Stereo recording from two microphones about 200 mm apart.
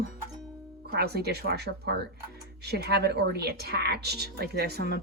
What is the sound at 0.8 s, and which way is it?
Speech, 55° right (ahead or behind).